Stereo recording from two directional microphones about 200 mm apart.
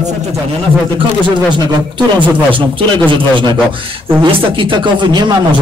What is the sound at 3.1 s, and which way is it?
Speech, 25° right (ahead or behind).